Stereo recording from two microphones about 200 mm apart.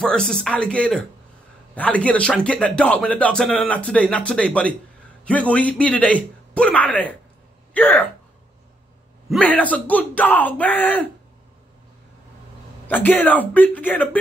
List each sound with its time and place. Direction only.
0.0 s speech: 5° left (ahead or behind)
9.3 s speech: 5° left (ahead or behind)
12.8 s speech: 10° left (ahead or behind)